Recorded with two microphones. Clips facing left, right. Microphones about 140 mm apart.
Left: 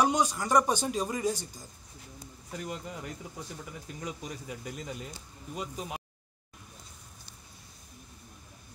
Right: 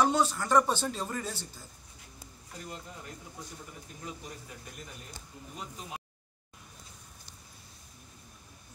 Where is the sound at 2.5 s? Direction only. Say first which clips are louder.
Left 6 dB; 90° left.